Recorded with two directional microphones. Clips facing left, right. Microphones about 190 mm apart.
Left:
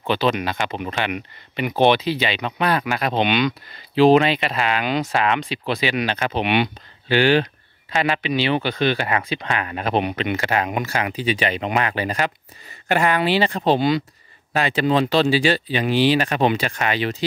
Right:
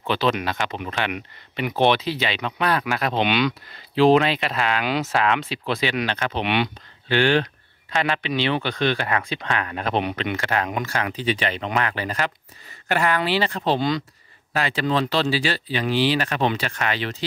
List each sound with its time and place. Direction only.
0.0 s speech: centre (ahead or behind)
14.5 s speech: 20° left (ahead or behind)